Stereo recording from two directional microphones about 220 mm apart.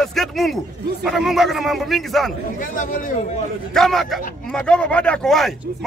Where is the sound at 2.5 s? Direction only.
35° left (ahead or behind).